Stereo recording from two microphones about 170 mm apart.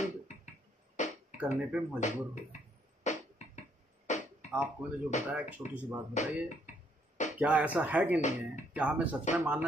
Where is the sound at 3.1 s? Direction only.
45° left (ahead or behind).